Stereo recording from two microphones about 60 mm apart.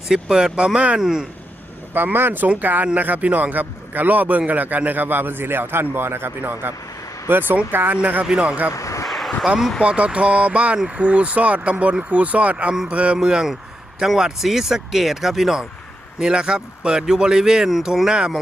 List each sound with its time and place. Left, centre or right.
0.1 s a man's voice: centre
1.9 s speech: right
8.7 s vehicle: left
9.0 s a sound: centre
9.8 s a man's voice: centre